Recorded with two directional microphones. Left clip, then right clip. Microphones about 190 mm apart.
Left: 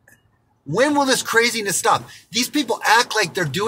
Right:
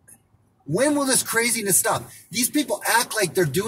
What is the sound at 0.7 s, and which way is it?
Speech, 10° left (ahead or behind).